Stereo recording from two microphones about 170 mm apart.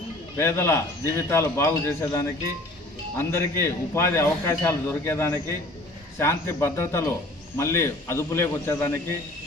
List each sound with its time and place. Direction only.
0.3 s a man's voice: 15° left (ahead or behind)